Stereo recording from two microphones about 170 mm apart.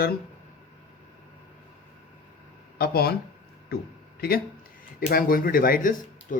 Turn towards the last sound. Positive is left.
turn(degrees=55)  # may be behind; listen again after turning